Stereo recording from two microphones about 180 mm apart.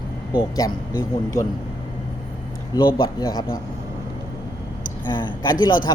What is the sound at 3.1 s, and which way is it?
Speech, 20° left (ahead or behind).